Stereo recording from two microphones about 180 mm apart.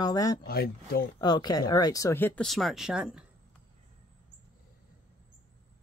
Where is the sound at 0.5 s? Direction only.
55° left (ahead or behind).